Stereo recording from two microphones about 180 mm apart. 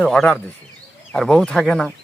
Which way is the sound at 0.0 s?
5° left (ahead or behind).